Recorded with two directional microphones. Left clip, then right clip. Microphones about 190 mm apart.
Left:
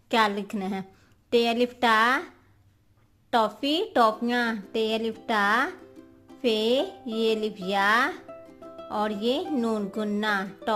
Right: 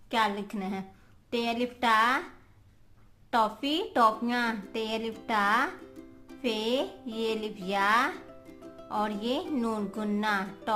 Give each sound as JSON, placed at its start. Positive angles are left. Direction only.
{"t": 0.1, "sound": "a woman's voice", "side_deg": 40}